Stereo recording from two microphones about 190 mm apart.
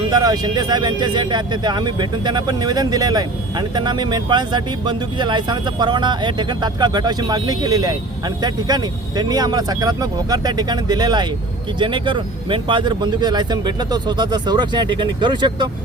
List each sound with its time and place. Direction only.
0.1 s speech: 20° right (ahead or behind)